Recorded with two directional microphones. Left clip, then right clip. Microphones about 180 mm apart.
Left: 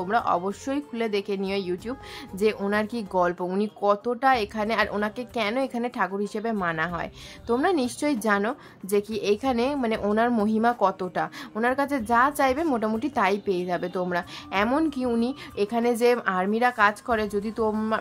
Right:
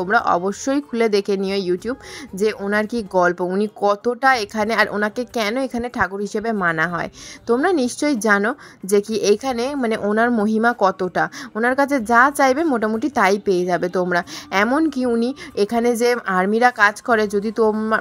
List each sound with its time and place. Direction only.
0.0 s speech: 25° right (ahead or behind)